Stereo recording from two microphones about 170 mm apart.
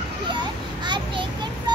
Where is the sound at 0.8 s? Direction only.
30° right (ahead or behind).